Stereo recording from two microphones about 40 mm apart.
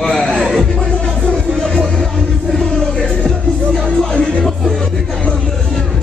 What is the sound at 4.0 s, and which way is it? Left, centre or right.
Music, left.